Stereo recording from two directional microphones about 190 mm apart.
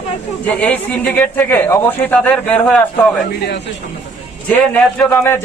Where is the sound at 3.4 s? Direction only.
60° left (ahead or behind).